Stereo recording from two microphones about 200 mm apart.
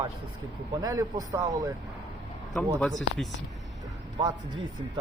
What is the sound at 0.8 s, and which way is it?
Speech, 20° right (ahead or behind).